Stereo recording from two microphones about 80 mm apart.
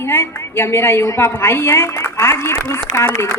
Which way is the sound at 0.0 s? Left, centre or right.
Left.